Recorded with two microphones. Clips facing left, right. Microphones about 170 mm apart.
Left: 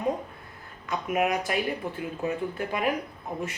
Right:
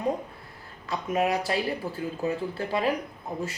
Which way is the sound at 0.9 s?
30° right (ahead or behind).